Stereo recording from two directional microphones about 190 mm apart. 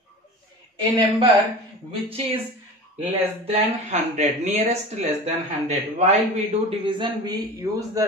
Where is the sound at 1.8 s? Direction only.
30° right (ahead or behind).